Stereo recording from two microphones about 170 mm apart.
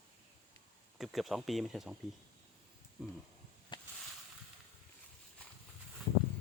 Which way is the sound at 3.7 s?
25° left (ahead or behind).